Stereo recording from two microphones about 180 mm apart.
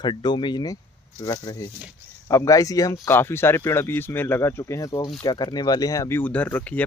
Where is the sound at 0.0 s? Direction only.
25° left (ahead or behind).